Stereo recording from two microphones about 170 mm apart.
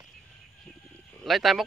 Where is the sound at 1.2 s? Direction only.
Centre (ahead or behind).